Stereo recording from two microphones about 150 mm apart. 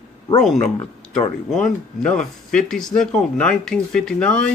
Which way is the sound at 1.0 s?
5° left (ahead or behind).